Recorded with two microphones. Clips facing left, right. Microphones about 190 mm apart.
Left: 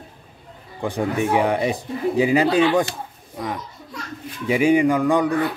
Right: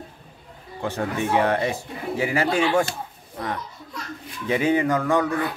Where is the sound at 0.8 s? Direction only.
15° left (ahead or behind).